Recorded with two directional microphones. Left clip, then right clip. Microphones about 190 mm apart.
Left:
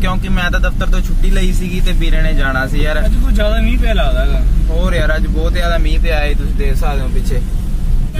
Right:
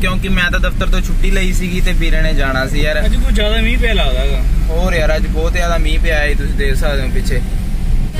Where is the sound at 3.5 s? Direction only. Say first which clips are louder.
Right 3 dB; 25° left (ahead or behind).